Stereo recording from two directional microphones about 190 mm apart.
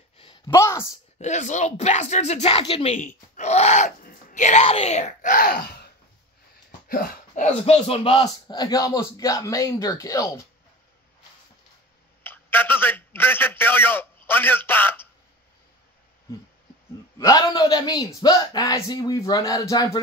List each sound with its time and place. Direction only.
0.2 s a sound: 25° left (ahead or behind)
1.1 s speech: 40° left (ahead or behind); by 5.9 s 55° left (ahead or behind)
6.9 s speech: 50° left (ahead or behind); by 10.4 s 15° left (ahead or behind)
12.2 s a man's voice: 10° left (ahead or behind)
17.2 s speech: 20° left (ahead or behind)